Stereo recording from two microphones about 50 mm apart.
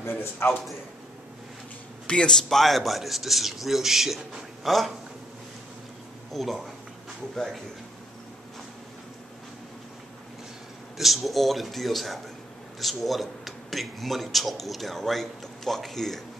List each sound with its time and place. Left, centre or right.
0.0 s a man's voice: left
2.0 s speech: centre
6.3 s speech: centre
11.0 s speech: centre